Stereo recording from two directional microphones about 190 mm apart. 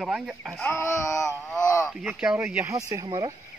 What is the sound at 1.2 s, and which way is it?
Speech, centre (ahead or behind).